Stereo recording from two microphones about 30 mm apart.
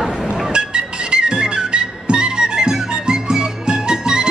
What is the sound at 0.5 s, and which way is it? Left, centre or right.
Music, right.